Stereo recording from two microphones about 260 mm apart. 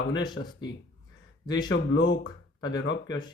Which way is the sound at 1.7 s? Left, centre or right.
Left.